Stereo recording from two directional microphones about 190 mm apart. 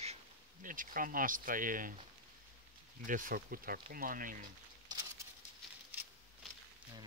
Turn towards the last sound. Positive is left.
turn(degrees=0)  # may be behind; listen again after turning